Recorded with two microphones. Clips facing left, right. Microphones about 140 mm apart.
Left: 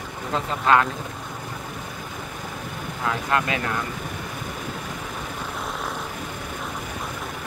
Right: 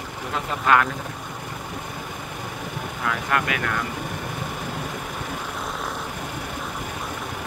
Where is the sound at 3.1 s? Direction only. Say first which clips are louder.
Left 1 dB; 25° left (ahead or behind).